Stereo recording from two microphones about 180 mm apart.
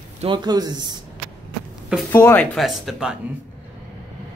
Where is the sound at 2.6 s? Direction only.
Centre (ahead or behind).